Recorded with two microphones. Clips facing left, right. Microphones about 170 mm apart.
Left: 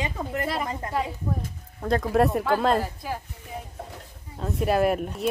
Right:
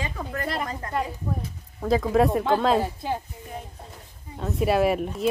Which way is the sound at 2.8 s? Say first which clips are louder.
Right 4 dB; 25° right (ahead or behind).